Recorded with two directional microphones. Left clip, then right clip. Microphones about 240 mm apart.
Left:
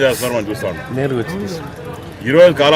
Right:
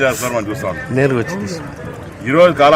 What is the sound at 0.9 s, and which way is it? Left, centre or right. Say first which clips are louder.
Speech: right 6 dB; right.